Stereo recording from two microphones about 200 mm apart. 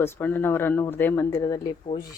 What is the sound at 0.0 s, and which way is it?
A woman's voice, 10° left (ahead or behind).